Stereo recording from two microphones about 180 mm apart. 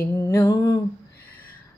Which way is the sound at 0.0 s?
20° left (ahead or behind).